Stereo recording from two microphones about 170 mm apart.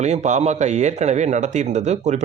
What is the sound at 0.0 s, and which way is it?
Speech, 40° right (ahead or behind).